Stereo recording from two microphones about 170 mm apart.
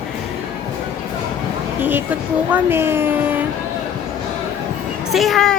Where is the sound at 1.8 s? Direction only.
10° right (ahead or behind).